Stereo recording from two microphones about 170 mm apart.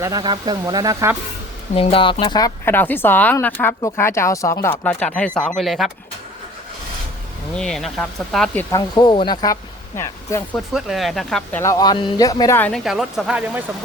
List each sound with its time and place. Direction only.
0.0 s speech: 25° right (ahead or behind)
1.7 s speech: 35° left (ahead or behind)
2.6 s a woman's voice: 10° left (ahead or behind)
7.5 s speech: 5° left (ahead or behind)
8.7 s speech: 25° left (ahead or behind)
10.8 s speech: centre (ahead or behind)
11.6 s a woman's voice: 20° left (ahead or behind); by 13.7 s 10° right (ahead or behind)